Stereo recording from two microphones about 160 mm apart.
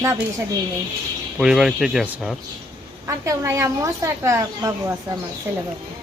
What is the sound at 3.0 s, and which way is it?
A woman's voice, 20° right (ahead or behind).